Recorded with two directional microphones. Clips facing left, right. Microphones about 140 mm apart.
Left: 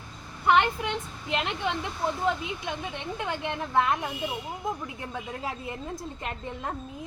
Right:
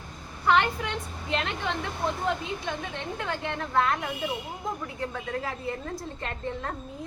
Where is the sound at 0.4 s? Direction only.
20° left (ahead or behind).